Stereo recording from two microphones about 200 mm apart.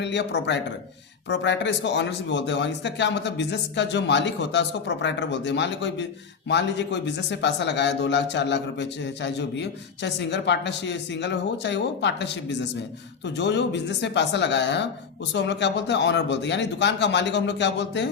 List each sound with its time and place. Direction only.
0.0 s a man's voice: 60° left (ahead or behind)